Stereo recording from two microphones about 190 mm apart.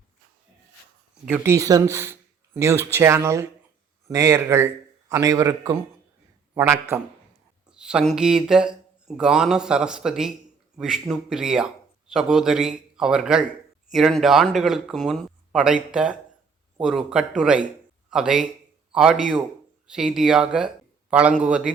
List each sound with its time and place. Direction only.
1.2 s a man's voice: 10° right (ahead or behind)